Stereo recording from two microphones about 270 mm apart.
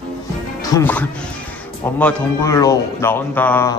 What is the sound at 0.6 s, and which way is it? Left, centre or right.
A man's voice, centre.